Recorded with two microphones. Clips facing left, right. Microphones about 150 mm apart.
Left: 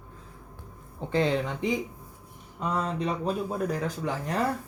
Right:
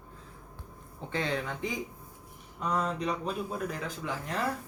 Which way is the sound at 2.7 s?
35° left (ahead or behind).